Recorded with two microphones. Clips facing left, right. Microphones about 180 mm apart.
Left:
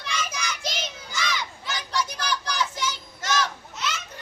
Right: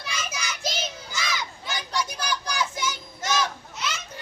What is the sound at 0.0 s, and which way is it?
Child singing, 5° right (ahead or behind).